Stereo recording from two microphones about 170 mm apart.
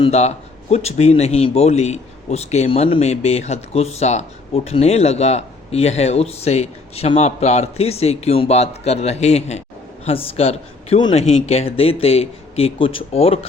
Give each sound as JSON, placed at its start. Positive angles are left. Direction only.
{"t": 0.0, "sound": "speech", "side_deg": 40}